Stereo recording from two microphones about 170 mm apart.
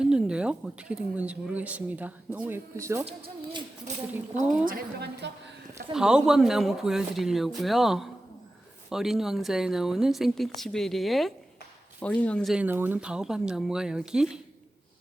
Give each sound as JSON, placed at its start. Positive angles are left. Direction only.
{"t": 0.0, "sound": "speech", "side_deg": -5}
{"t": 3.1, "sound": "speech", "side_deg": -35}
{"t": 4.6, "sound": "a woman's voice", "side_deg": -65}
{"t": 5.9, "sound": "speech", "side_deg": -5}